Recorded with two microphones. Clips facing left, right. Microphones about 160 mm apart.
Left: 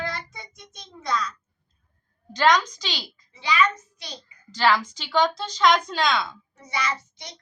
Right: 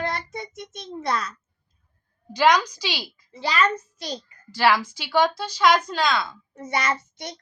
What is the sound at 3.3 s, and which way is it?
A child's voice, 45° right (ahead or behind).